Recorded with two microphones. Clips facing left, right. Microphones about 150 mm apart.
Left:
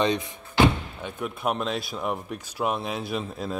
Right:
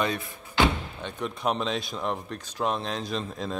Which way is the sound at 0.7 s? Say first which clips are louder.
Left 3 dB; 5° left (ahead or behind).